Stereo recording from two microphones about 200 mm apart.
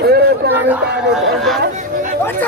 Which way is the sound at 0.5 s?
10° right (ahead or behind).